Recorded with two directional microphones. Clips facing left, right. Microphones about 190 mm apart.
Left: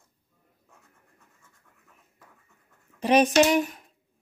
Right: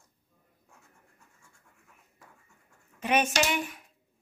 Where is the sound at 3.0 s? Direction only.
35° left (ahead or behind).